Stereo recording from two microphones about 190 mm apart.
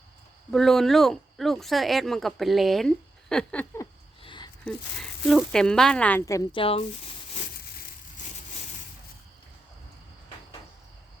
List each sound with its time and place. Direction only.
0.5 s speech: centre (ahead or behind)
3.8 s a sound: 25° left (ahead or behind)
4.6 s speech: centre (ahead or behind)
6.6 s speech: 30° left (ahead or behind)